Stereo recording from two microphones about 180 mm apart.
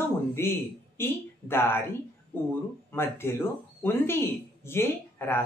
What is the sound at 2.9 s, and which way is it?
Speech, 15° left (ahead or behind).